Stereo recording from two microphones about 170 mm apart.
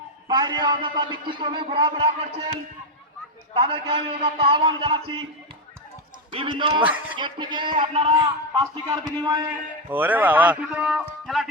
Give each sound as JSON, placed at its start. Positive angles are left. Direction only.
{"t": 0.3, "sound": "a man's voice", "side_deg": -25}
{"t": 3.5, "sound": "a man's voice", "side_deg": -30}
{"t": 6.3, "sound": "a man's voice", "side_deg": -30}
{"t": 6.8, "sound": "speech", "side_deg": -10}
{"t": 7.2, "sound": "a man's voice", "side_deg": -30}
{"t": 7.8, "sound": "a man's voice", "side_deg": -40}
{"t": 8.1, "sound": "a man's voice", "side_deg": -25}
{"t": 9.9, "sound": "speech", "side_deg": -10}
{"t": 11.3, "sound": "music", "side_deg": 0}